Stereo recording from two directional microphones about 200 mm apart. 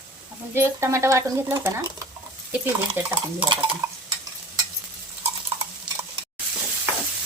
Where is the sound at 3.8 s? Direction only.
15° right (ahead or behind).